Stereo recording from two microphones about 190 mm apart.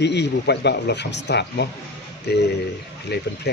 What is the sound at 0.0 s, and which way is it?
Speech, 65° left (ahead or behind).